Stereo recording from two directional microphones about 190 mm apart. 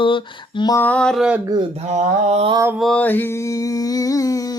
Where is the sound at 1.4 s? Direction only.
20° right (ahead or behind).